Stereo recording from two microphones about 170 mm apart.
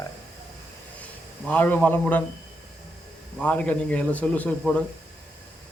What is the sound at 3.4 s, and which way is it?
Speech, 10° left (ahead or behind).